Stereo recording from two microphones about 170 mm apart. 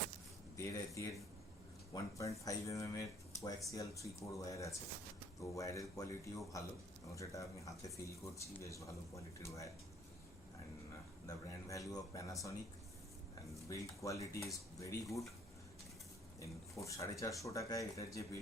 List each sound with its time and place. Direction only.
0.5 s speech: 20° left (ahead or behind)
11.3 s speech: 20° left (ahead or behind)
13.7 s speech: 20° left (ahead or behind)
16.4 s speech: 20° left (ahead or behind)